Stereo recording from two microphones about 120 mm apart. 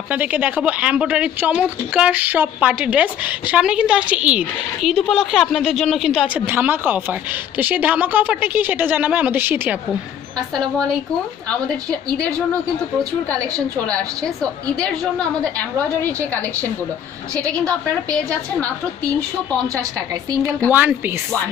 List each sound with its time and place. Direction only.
0.1 s speech: 15° right (ahead or behind)
4.8 s a woman's voice: centre (ahead or behind)
6.2 s speech: 15° right (ahead or behind)
10.5 s a woman's voice: 5° left (ahead or behind)
13.8 s a woman's voice: 10° left (ahead or behind)
17.8 s a woman's voice: 10° left (ahead or behind)
19.7 s a woman's voice: 30° right (ahead or behind)
20.7 s speech: 15° right (ahead or behind)